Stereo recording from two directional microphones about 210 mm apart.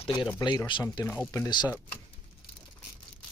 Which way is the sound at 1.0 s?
10° left (ahead or behind).